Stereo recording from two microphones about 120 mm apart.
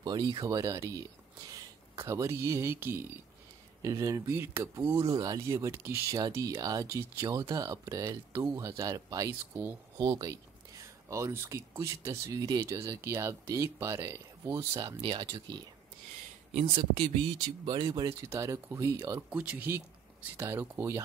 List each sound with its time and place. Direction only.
0.0 s speech: 35° right (ahead or behind)
9.9 s speech: 35° right (ahead or behind)
15.0 s speech: 40° right (ahead or behind)
16.6 s speech: 50° right (ahead or behind)
18.0 s speech: 20° right (ahead or behind)
19.3 s speech: 10° right (ahead or behind)